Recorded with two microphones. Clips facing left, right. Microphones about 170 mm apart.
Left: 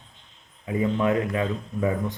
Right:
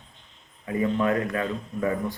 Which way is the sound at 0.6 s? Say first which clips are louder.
Left 1 dB; 15° left (ahead or behind).